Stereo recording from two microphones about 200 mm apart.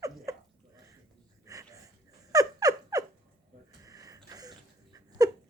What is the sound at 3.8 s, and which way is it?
Wheeze, 15° right (ahead or behind).